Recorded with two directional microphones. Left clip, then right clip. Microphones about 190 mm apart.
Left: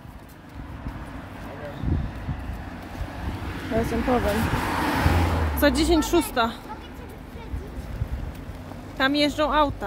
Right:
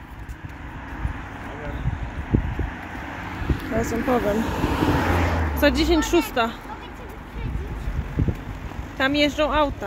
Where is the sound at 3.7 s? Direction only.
5° left (ahead or behind).